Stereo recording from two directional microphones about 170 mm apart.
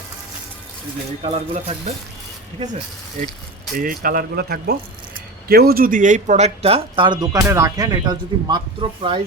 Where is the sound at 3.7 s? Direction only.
55° right (ahead or behind).